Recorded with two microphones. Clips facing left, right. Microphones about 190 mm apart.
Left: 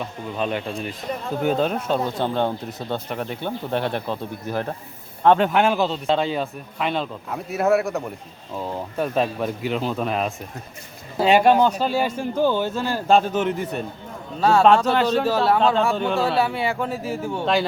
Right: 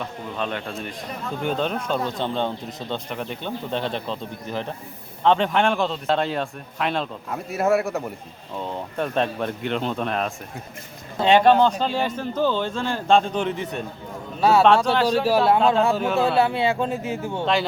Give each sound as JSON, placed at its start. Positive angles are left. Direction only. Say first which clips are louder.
{"t": 0.0, "sound": "a man's voice", "louder": "left 2 dB", "side_deg": 5}
{"t": 16.0, "sound": "a man's voice", "louder": "even", "side_deg": -5}
{"t": 16.4, "sound": "speech", "louder": "right 2 dB", "side_deg": -20}
{"t": 17.4, "sound": "a man's voice", "louder": "left 1 dB", "side_deg": 0}